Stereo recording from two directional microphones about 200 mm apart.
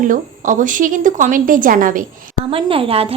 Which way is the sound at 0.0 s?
40° right (ahead or behind).